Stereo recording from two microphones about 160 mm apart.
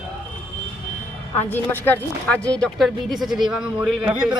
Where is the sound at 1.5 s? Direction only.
10° left (ahead or behind); by 4.3 s 5° right (ahead or behind).